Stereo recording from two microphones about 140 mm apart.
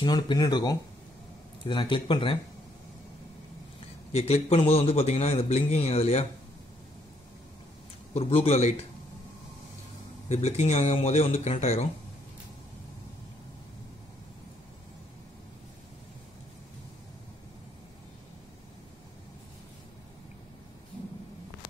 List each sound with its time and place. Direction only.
0.0 s speech: 30° left (ahead or behind)
4.1 s a man's voice: 45° left (ahead or behind)
8.1 s a man's voice: 45° left (ahead or behind)
10.2 s a man's voice: 50° left (ahead or behind)